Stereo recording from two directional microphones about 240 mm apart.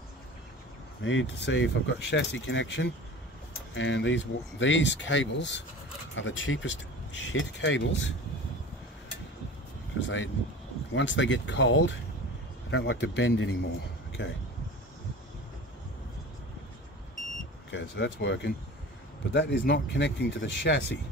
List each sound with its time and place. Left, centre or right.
1.0 s speech: left
9.9 s speech: left
17.6 s speech: left